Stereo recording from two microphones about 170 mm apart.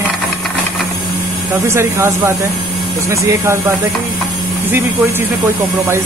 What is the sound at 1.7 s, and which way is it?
Speech, 15° right (ahead or behind).